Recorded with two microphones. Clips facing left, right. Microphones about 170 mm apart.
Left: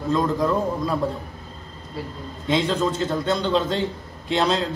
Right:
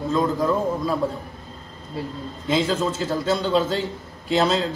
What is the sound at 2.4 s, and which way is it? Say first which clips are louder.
A man's voice: even; centre (ahead or behind).